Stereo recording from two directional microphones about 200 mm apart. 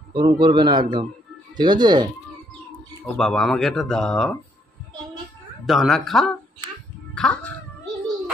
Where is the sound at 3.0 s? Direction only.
Centre (ahead or behind).